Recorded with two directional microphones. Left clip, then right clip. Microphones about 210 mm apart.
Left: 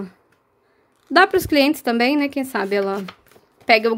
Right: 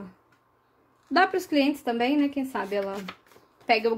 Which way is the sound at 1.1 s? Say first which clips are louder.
Left 8 dB; 35° left (ahead or behind).